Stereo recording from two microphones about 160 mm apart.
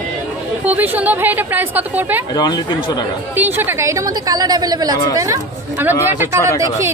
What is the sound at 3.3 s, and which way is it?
A woman's voice, 10° right (ahead or behind).